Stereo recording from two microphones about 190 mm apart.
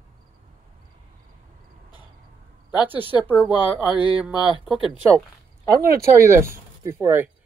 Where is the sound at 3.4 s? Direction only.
5° right (ahead or behind).